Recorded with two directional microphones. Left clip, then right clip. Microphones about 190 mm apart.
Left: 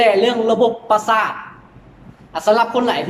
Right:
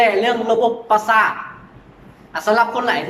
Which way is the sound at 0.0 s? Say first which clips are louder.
Left 2 dB; 20° left (ahead or behind).